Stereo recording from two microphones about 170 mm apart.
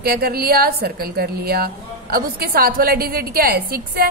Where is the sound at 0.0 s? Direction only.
65° right (ahead or behind).